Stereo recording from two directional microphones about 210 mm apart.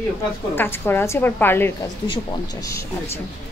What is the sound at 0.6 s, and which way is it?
Speech, 10° left (ahead or behind).